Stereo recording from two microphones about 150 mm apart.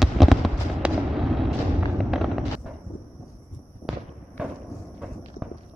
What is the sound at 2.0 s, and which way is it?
Fireworks, centre (ahead or behind).